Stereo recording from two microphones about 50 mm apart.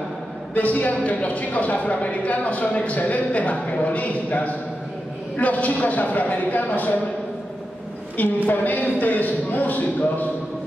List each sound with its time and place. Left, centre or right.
0.6 s a woman's voice: left
8.5 s a man's voice: left